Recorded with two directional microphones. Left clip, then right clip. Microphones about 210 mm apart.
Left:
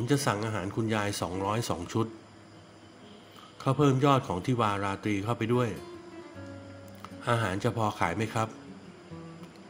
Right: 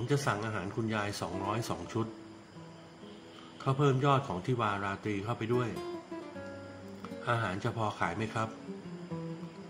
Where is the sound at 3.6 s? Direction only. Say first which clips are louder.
Left 4 dB; 35° left (ahead or behind).